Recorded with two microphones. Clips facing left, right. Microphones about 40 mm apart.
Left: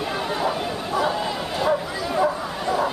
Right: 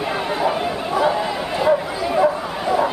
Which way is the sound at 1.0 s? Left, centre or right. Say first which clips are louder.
Right 4 dB; centre.